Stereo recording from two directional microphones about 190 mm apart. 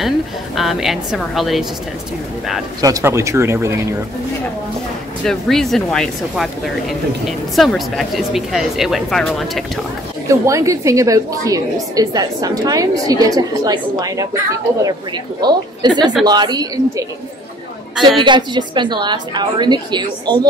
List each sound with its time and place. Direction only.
0.6 s a woman's voice: centre (ahead or behind)
2.8 s speech: 15° right (ahead or behind)
5.2 s a woman's voice: 5° left (ahead or behind)
10.2 s a woman's voice: 15° right (ahead or behind)
18.2 s a woman's voice: 25° right (ahead or behind)